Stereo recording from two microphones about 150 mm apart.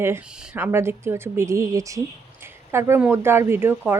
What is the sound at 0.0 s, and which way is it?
Speech, 15° right (ahead or behind).